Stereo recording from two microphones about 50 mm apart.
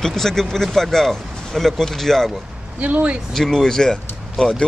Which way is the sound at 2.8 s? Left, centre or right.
Right.